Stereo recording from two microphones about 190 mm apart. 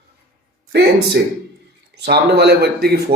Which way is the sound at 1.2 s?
60° right (ahead or behind).